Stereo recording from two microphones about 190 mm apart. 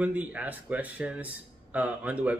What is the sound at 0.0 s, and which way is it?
A man's voice, 10° right (ahead or behind).